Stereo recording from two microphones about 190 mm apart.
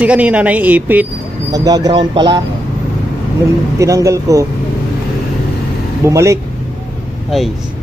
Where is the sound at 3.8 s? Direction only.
15° right (ahead or behind).